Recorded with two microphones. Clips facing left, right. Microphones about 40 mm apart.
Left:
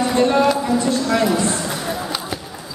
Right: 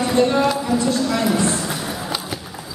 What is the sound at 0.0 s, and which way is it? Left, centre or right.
Speech, centre.